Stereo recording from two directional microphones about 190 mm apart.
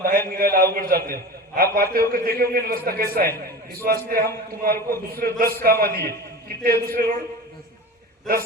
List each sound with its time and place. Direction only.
0.0 s a man's voice: 50° right (ahead or behind)